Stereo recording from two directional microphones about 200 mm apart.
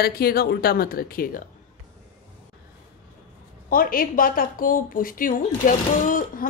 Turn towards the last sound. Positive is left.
turn(degrees=45)  # may be behind; listen again after turning